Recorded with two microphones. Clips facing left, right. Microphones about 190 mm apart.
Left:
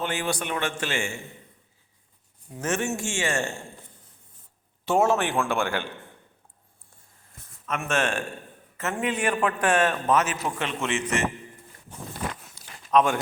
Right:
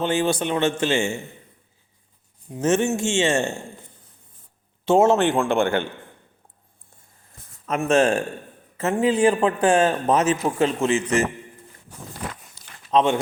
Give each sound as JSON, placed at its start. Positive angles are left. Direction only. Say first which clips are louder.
{"t": 0.0, "sound": "a man's voice", "louder": "right 7 dB", "side_deg": -25}
{"t": 2.5, "sound": "a man's voice", "louder": "right 7 dB", "side_deg": -25}
{"t": 4.9, "sound": "a man's voice", "louder": "right 6 dB", "side_deg": -20}
{"t": 7.7, "sound": "a man's voice", "louder": "right 8 dB", "side_deg": -35}
{"t": 12.9, "sound": "speech", "louder": "right 2 dB", "side_deg": -25}